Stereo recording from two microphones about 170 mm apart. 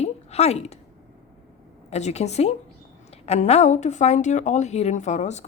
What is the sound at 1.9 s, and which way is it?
A woman's voice, 40° left (ahead or behind).